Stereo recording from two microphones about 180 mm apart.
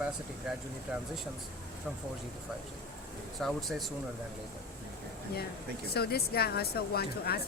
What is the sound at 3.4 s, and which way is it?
Speech, centre (ahead or behind).